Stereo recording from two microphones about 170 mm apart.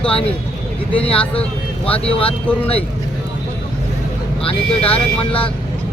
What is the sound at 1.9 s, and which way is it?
Speech, 35° left (ahead or behind).